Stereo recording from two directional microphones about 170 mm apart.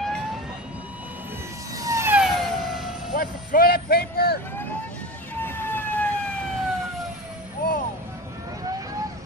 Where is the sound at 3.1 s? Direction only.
55° left (ahead or behind).